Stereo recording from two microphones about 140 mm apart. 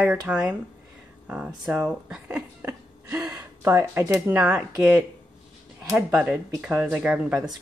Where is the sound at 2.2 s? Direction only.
15° right (ahead or behind).